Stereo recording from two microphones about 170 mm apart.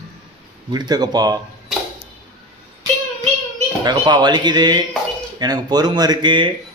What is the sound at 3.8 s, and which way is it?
Speech, 25° right (ahead or behind).